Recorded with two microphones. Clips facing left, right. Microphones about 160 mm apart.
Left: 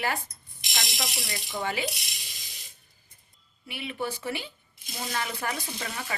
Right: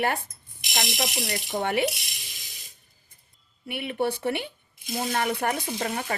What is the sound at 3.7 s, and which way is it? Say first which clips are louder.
Speech: right 6 dB; 60° right (ahead or behind).